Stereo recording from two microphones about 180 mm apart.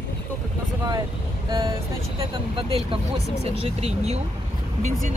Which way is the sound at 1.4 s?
25° right (ahead or behind).